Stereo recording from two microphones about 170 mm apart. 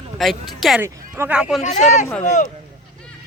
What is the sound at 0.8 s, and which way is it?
Speech, 15° right (ahead or behind).